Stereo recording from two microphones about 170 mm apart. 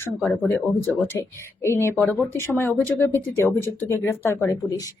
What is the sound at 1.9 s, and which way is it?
Speech, 5° left (ahead or behind).